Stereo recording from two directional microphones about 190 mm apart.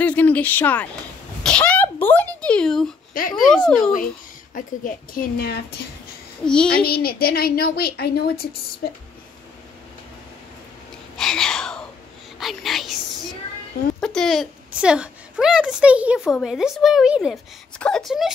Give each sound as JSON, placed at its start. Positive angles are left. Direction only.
{"t": 0.0, "sound": "speech", "side_deg": 10}
{"t": 1.4, "sound": "a sound", "side_deg": 5}
{"t": 2.4, "sound": "speech", "side_deg": 5}
{"t": 4.6, "sound": "a woman's voice", "side_deg": 45}
{"t": 6.4, "sound": "speech", "side_deg": 5}
{"t": 6.8, "sound": "a woman's voice", "side_deg": 55}
{"t": 11.1, "sound": "a sound", "side_deg": 5}
{"t": 13.9, "sound": "speech", "side_deg": 5}